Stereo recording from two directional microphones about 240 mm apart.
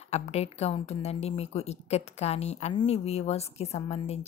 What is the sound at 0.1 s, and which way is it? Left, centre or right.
A woman's voice, left.